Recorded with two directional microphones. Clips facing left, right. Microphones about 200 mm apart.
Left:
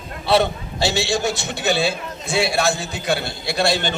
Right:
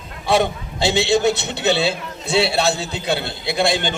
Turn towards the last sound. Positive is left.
turn(degrees=-15)  # may be behind; listen again after turning